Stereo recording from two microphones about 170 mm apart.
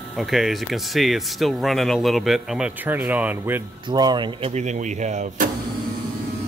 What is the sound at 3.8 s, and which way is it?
Speech, 25° right (ahead or behind).